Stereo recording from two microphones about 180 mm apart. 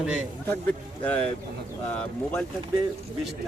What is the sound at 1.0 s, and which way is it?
Speech, 5° left (ahead or behind).